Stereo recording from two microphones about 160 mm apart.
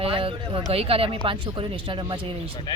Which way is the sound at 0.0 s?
35° right (ahead or behind).